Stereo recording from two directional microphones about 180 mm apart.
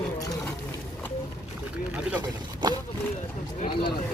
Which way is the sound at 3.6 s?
30° left (ahead or behind).